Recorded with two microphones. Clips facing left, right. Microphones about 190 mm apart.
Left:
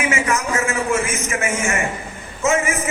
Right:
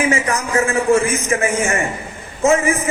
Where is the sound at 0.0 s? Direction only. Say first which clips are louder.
Right 2 dB; 35° right (ahead or behind).